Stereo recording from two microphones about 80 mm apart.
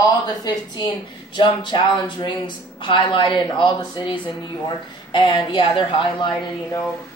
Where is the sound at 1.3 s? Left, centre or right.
Left.